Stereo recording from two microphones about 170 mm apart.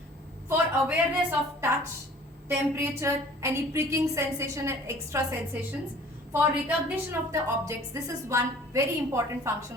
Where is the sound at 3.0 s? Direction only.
15° right (ahead or behind).